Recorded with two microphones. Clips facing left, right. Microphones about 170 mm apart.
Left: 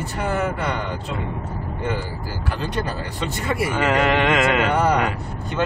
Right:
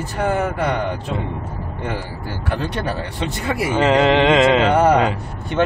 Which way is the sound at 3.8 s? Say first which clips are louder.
Right 6 dB; 25° right (ahead or behind).